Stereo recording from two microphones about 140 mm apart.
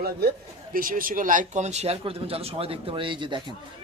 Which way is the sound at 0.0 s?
90° right.